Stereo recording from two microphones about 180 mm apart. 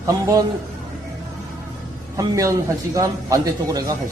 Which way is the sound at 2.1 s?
20° right (ahead or behind).